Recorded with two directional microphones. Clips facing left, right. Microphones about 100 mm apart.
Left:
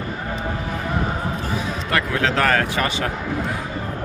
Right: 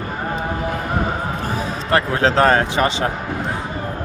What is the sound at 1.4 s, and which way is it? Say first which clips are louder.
Speech: right 2 dB; 45° right (ahead or behind).